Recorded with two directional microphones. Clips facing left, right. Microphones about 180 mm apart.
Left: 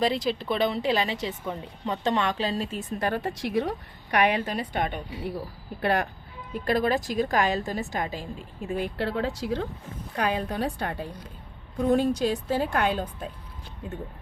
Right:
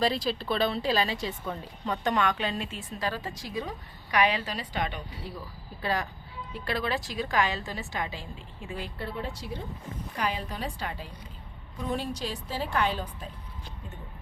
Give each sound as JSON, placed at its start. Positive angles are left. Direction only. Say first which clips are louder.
{"t": 0.0, "sound": "a woman's voice", "louder": "left 2 dB", "side_deg": 20}
{"t": 3.0, "sound": "a woman's voice", "louder": "left 5 dB", "side_deg": 60}
{"t": 6.5, "sound": "a woman's voice", "louder": "left 7 dB", "side_deg": 45}
{"t": 9.0, "sound": "speech", "louder": "left 8 dB", "side_deg": 90}
{"t": 10.3, "sound": "a woman's voice", "louder": "left 7 dB", "side_deg": 55}